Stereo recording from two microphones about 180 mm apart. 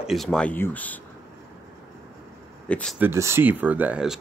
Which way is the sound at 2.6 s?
5° left (ahead or behind).